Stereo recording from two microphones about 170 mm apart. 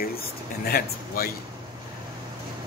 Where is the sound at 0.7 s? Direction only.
60° left (ahead or behind).